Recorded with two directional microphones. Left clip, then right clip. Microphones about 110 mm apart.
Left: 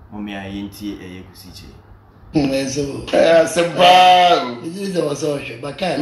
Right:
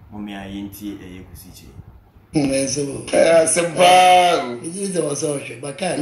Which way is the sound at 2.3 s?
40° right (ahead or behind).